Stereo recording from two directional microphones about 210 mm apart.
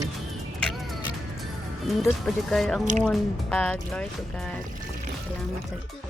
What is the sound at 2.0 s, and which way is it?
Speech, centre (ahead or behind).